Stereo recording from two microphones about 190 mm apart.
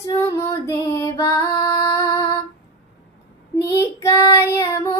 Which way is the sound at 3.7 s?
15° left (ahead or behind).